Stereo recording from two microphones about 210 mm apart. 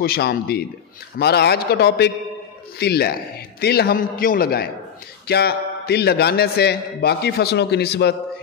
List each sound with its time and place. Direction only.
0.0 s a man's voice: 50° left (ahead or behind)